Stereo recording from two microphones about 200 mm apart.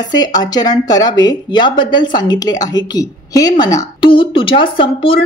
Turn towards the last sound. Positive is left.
turn(degrees=25)  # may be behind; listen again after turning